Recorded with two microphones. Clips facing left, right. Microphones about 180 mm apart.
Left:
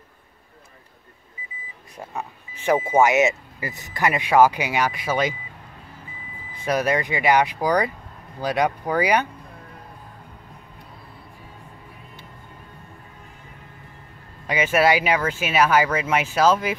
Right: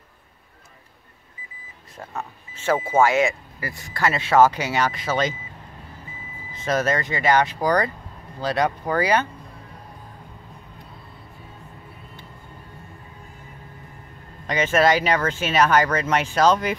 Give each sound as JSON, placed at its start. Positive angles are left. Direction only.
{"t": 2.0, "sound": "speech", "side_deg": 15}
{"t": 6.5, "sound": "speech", "side_deg": 10}
{"t": 14.5, "sound": "speech", "side_deg": 10}